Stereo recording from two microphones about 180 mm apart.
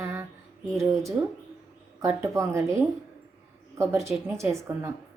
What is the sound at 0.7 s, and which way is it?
Speech, 15° right (ahead or behind).